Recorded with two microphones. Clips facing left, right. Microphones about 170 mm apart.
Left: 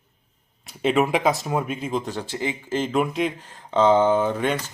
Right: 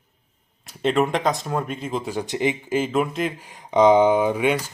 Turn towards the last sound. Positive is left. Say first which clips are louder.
# right 3 dB
turn(degrees=-10)  # may be behind; listen again after turning